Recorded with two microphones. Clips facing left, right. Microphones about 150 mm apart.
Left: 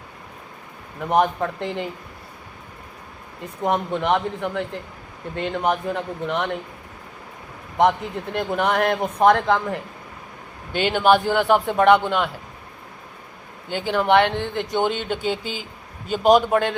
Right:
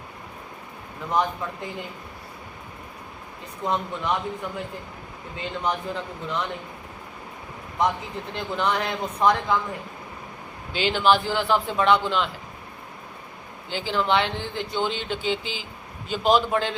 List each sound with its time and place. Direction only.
1.1 s speech: 65° left (ahead or behind)
3.6 s speech: 60° left (ahead or behind)
7.8 s speech: 60° left (ahead or behind)
10.7 s speech: 55° left (ahead or behind)
13.7 s speech: 55° left (ahead or behind)